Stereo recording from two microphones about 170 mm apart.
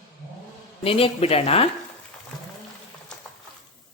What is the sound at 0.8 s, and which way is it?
Speech, 35° left (ahead or behind).